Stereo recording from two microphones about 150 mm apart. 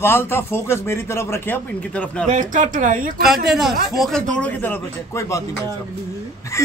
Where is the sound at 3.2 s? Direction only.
Centre (ahead or behind); by 5.4 s 20° left (ahead or behind).